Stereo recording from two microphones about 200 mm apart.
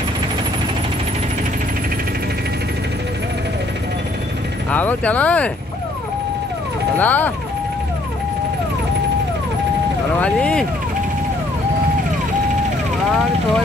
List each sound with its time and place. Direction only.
4.6 s speech: 10° left (ahead or behind)
7.0 s speech: 10° left (ahead or behind)
10.2 s speech: 5° left (ahead or behind)